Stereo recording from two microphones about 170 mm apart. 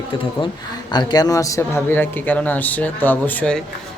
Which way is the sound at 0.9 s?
25° left (ahead or behind).